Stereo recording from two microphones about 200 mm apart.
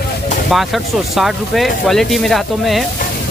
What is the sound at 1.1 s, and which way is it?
Speech, centre (ahead or behind).